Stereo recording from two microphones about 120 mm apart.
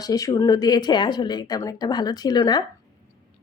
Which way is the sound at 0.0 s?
30° left (ahead or behind).